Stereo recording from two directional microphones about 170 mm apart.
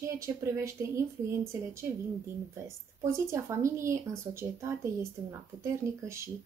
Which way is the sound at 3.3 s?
15° right (ahead or behind).